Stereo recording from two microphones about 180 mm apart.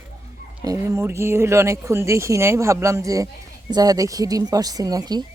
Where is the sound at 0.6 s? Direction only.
20° right (ahead or behind).